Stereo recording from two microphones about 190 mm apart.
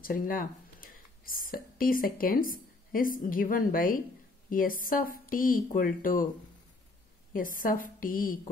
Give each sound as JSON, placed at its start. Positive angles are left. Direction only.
{"t": 0.0, "sound": "speech", "side_deg": 50}
{"t": 7.3, "sound": "speech", "side_deg": 45}